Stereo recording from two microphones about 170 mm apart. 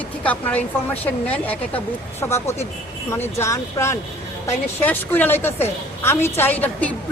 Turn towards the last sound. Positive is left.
turn(degrees=10)  # may be behind; listen again after turning